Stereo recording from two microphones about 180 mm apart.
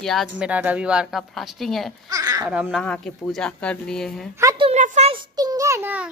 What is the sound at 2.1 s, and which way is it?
Babbling, 20° right (ahead or behind).